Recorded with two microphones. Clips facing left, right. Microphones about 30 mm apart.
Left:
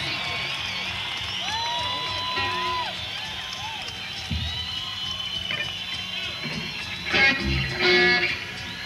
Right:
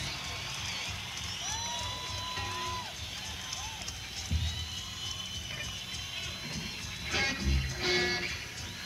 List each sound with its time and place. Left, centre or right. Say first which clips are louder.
1.5 s music: left 11 dB; left
7.1 s music: left 12 dB; left